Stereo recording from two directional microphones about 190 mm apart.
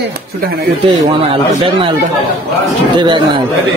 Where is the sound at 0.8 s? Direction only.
25° right (ahead or behind).